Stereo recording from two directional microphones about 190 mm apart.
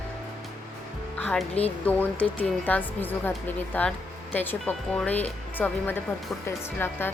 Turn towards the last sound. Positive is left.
turn(degrees=10)  # may be behind; listen again after turning